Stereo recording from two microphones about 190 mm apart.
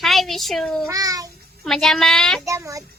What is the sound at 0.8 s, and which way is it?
Child singing, 20° right (ahead or behind).